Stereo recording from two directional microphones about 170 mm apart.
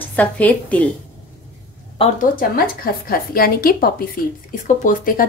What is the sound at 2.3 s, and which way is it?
Speech, 60° left (ahead or behind).